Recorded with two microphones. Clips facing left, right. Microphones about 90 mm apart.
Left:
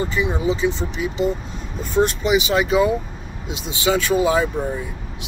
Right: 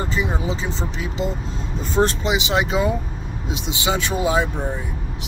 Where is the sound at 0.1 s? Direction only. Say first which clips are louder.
Left 3 dB; 30° right (ahead or behind).